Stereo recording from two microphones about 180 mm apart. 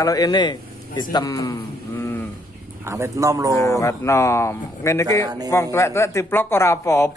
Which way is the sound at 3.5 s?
15° left (ahead or behind).